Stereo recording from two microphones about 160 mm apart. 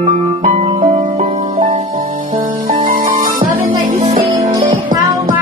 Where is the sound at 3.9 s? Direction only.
40° right (ahead or behind).